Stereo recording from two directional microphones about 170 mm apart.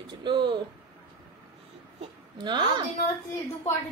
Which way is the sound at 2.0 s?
25° right (ahead or behind).